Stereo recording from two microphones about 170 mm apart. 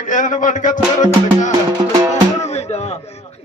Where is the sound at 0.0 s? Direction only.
50° left (ahead or behind).